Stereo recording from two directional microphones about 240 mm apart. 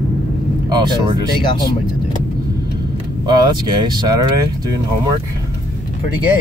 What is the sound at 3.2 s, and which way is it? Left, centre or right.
Speech, centre.